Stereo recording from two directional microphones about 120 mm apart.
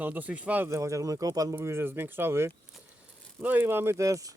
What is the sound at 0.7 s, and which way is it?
Speech, 25° right (ahead or behind).